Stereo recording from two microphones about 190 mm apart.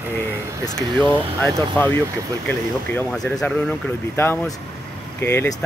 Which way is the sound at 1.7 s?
10° left (ahead or behind).